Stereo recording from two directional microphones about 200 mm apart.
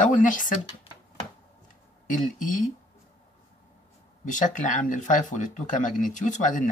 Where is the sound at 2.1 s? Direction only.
40° left (ahead or behind).